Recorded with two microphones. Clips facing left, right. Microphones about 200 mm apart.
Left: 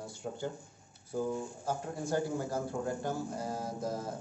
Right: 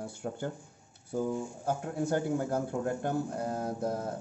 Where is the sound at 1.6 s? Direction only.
60° right (ahead or behind).